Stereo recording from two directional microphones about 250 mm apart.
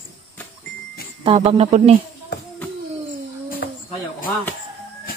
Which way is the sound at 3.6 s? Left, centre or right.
Left.